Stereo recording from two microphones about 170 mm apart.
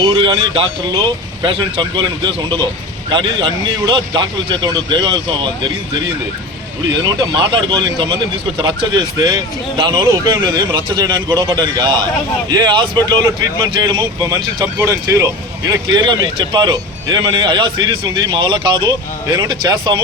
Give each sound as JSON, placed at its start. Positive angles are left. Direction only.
{"t": 0.0, "sound": "a man's voice", "side_deg": -25}
{"t": 7.0, "sound": "a man's voice", "side_deg": -25}